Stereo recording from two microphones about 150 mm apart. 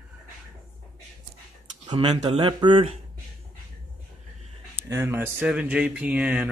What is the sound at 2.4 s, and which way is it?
Speech, 30° right (ahead or behind).